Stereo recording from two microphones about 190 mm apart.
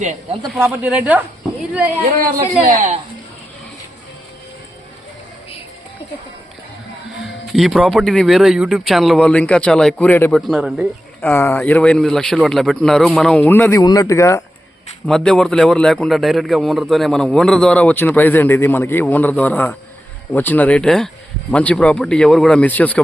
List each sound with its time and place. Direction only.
0.0 s speech: 40° right (ahead or behind)
0.5 s speech: 10° right (ahead or behind)
2.0 s speech: 45° right (ahead or behind)
7.5 s a man's voice: centre (ahead or behind)
10.5 s a man's voice: 5° right (ahead or behind); by 14.4 s 15° left (ahead or behind)
15.0 s a man's voice: 5° left (ahead or behind)